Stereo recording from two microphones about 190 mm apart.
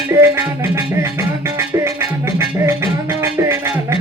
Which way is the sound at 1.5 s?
15° right (ahead or behind).